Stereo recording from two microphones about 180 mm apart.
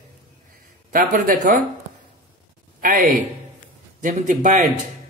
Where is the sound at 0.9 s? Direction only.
50° right (ahead or behind).